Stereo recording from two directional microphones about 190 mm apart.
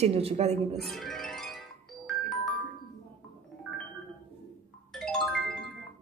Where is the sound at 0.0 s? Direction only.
30° right (ahead or behind).